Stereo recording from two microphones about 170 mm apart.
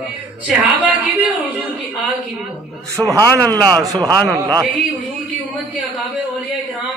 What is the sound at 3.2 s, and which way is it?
Speech, 10° left (ahead or behind).